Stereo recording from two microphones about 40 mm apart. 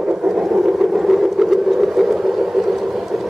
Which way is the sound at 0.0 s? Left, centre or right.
Right.